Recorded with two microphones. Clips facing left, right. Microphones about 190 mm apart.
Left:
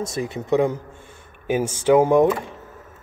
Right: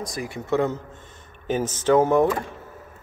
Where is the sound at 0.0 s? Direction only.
25° left (ahead or behind).